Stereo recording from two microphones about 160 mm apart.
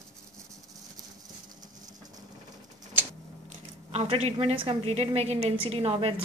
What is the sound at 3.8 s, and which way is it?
A woman's voice, 40° right (ahead or behind).